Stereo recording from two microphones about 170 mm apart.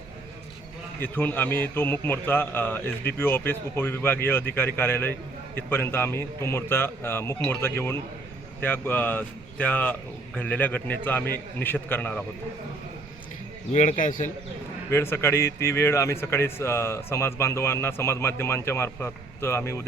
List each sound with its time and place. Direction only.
1.0 s speech: 10° left (ahead or behind)
13.7 s a man's voice: 50° left (ahead or behind)
14.8 s speech: 15° left (ahead or behind)